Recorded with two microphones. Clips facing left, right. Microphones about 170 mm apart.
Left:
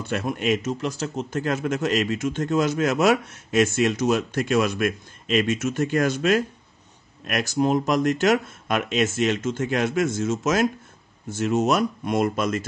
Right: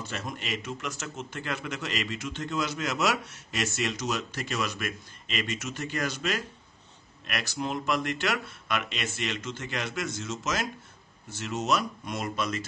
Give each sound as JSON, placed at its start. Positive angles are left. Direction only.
{"t": 0.0, "sound": "speech", "side_deg": 60}